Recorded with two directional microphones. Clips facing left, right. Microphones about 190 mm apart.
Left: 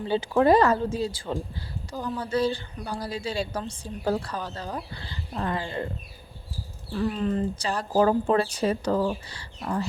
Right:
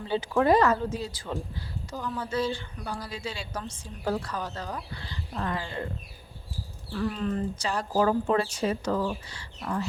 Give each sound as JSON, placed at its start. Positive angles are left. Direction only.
{"t": 0.1, "sound": "speech", "side_deg": 30}
{"t": 6.9, "sound": "speech", "side_deg": 25}